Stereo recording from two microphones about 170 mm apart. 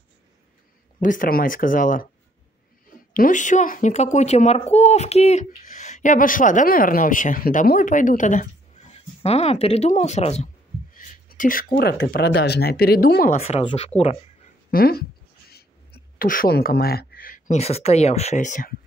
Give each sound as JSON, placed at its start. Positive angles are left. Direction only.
{"t": 1.0, "sound": "a woman's voice", "side_deg": 55}
{"t": 3.1, "sound": "a woman's voice", "side_deg": 50}
{"t": 11.0, "sound": "speech", "side_deg": 50}
{"t": 13.4, "sound": "speech", "side_deg": 35}
{"t": 14.7, "sound": "speech", "side_deg": 65}
{"t": 15.5, "sound": "a sound", "side_deg": 65}
{"t": 17.6, "sound": "speech", "side_deg": 35}